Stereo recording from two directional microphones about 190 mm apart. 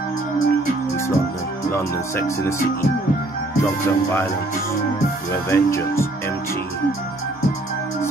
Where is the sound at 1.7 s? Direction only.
15° left (ahead or behind).